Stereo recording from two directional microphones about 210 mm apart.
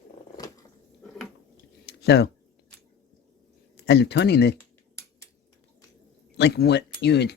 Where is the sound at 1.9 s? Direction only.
50° left (ahead or behind).